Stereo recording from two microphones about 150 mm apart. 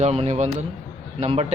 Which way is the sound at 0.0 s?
45° right (ahead or behind).